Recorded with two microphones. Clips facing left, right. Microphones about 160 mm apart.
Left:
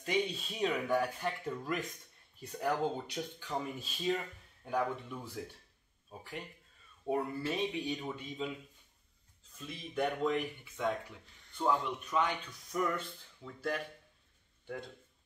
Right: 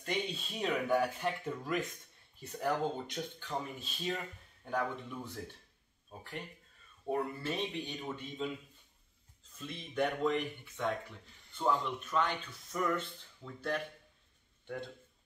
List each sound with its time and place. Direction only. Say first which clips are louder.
0.0 s speech: left 3 dB; 5° left (ahead or behind)
7.1 s speech: left 1 dB; 5° left (ahead or behind)
9.6 s speech: right 1 dB; 5° left (ahead or behind)